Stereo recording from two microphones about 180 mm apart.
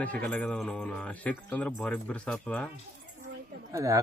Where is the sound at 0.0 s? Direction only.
10° left (ahead or behind).